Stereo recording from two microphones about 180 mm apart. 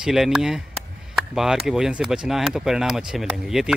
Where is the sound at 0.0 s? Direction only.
5° right (ahead or behind).